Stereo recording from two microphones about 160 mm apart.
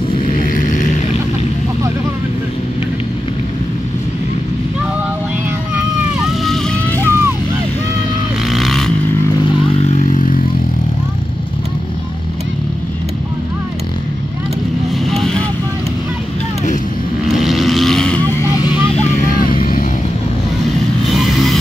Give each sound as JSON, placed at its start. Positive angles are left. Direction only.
{"t": 0.4, "sound": "vehicle", "side_deg": 55}
{"t": 6.0, "sound": "vehicle", "side_deg": 0}
{"t": 8.5, "sound": "vehicle", "side_deg": 0}
{"t": 9.8, "sound": "vehicle", "side_deg": 45}
{"t": 15.0, "sound": "vehicle", "side_deg": 0}
{"t": 17.4, "sound": "vehicle", "side_deg": 0}
{"t": 18.3, "sound": "vehicle", "side_deg": 20}
{"t": 19.0, "sound": "vehicle", "side_deg": 60}
{"t": 21.0, "sound": "vehicle", "side_deg": 0}